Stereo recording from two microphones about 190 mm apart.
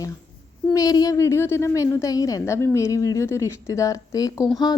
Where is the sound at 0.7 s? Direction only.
20° left (ahead or behind).